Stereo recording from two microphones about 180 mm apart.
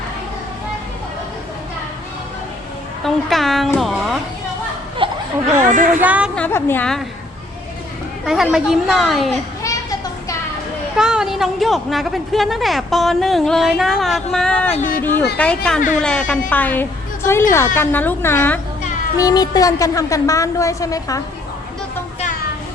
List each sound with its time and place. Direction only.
3.0 s a woman's voice: centre (ahead or behind)
5.0 s a sound: 30° right (ahead or behind)
5.5 s speech: 45° right (ahead or behind)
6.0 s speech: 10° right (ahead or behind)
6.3 s a woman's voice: 10° left (ahead or behind)
8.2 s a woman's voice: centre (ahead or behind)
10.9 s a woman's voice: 5° right (ahead or behind)
14.8 s speech: 50° left (ahead or behind)
15.4 s a woman's voice: 5° left (ahead or behind)
19.1 s a woman's voice: 20° left (ahead or behind)